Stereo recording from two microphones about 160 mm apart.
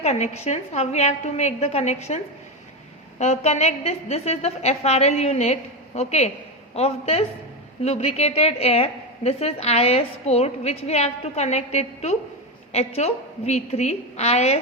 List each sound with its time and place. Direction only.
0.0 s a woman's voice: 40° left (ahead or behind)